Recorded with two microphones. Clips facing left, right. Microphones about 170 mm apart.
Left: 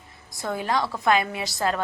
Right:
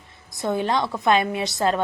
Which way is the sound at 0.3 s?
25° right (ahead or behind).